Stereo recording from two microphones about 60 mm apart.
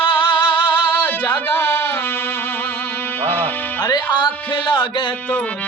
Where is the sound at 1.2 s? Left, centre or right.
Left.